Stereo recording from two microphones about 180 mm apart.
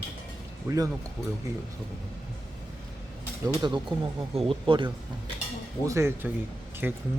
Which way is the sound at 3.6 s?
25° right (ahead or behind).